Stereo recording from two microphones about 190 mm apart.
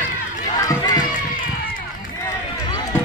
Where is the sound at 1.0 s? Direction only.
45° left (ahead or behind).